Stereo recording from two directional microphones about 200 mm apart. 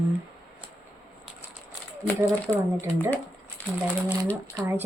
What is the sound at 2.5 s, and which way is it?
Speech, 15° right (ahead or behind).